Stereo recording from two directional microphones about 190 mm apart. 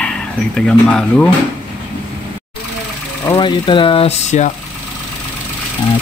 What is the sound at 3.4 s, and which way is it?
Speech, 25° left (ahead or behind).